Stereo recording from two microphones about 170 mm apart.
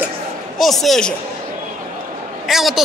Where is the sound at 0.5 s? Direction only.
Centre (ahead or behind).